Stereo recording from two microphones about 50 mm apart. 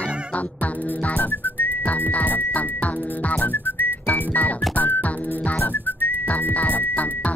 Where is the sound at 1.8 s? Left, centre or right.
Left.